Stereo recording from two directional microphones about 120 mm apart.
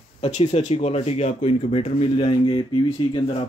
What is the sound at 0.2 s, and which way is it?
A man's voice, 60° left (ahead or behind).